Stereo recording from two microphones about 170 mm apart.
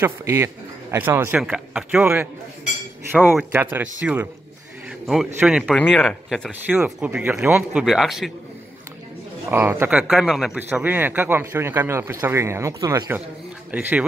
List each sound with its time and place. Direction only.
0.0 s a man's voice: 15° right (ahead or behind)
9.5 s a man's voice: 15° right (ahead or behind)